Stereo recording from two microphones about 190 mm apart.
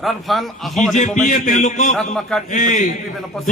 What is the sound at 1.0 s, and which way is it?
A man's voice, 40° left (ahead or behind).